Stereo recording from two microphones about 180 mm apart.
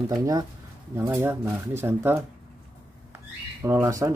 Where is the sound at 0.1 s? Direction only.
20° right (ahead or behind).